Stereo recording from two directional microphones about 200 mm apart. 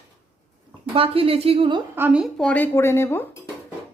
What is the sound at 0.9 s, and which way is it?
Speech, 25° right (ahead or behind).